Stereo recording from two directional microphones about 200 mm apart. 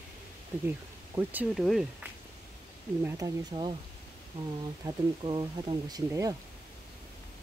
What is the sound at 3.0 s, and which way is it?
Speech, 20° right (ahead or behind).